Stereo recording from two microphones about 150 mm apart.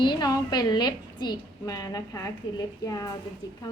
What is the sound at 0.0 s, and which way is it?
A woman's voice, 30° left (ahead or behind).